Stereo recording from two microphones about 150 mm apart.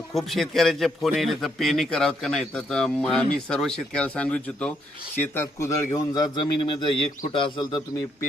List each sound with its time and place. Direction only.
0.1 s a man's voice: centre (ahead or behind); by 7.8 s 30° left (ahead or behind)